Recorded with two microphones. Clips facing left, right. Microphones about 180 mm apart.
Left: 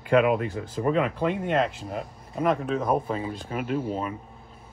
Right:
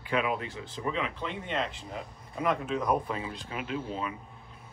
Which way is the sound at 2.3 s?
40° left (ahead or behind).